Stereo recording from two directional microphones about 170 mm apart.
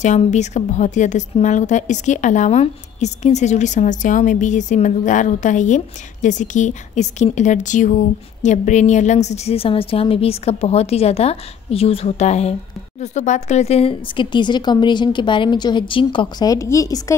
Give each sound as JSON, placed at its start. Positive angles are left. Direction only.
{"t": 0.0, "sound": "a woman's voice", "side_deg": 45}